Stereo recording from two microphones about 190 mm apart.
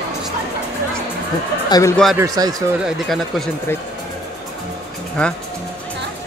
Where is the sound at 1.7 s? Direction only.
15° left (ahead or behind).